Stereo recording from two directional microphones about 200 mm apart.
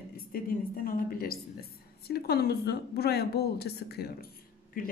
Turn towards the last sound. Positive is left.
turn(degrees=45)  # may be behind; listen again after turning